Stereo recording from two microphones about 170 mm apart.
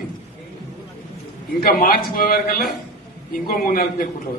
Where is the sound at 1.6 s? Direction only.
60° left (ahead or behind).